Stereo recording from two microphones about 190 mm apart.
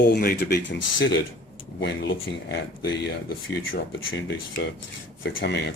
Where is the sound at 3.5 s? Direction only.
75° left (ahead or behind).